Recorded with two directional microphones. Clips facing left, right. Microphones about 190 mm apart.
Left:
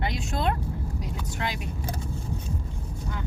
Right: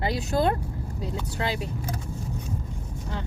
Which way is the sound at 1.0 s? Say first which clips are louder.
Right 5 dB; 30° right (ahead or behind).